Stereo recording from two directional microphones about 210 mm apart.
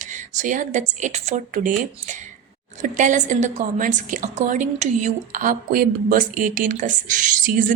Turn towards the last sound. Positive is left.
turn(degrees=-40)  # may be behind; listen again after turning